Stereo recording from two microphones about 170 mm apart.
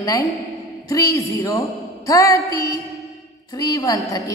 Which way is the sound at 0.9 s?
20° left (ahead or behind).